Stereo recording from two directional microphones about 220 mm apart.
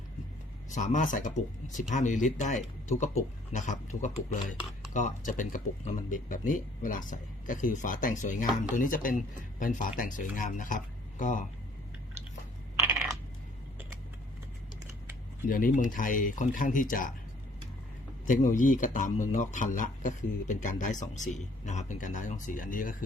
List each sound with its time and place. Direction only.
0.7 s speech: 35° left (ahead or behind)
12.8 s coin: 10° right (ahead or behind)
15.4 s speech: 40° left (ahead or behind)
18.3 s speech: 35° left (ahead or behind)